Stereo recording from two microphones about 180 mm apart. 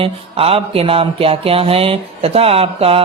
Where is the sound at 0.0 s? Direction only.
30° right (ahead or behind).